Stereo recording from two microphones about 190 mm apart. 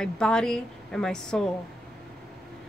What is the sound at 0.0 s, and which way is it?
Speech, 5° left (ahead or behind).